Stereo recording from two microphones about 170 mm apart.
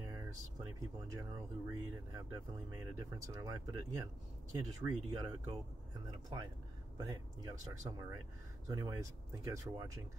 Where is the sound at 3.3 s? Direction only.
20° right (ahead or behind).